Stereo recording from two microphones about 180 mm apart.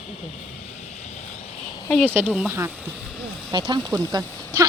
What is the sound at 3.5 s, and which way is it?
Speech, 25° right (ahead or behind).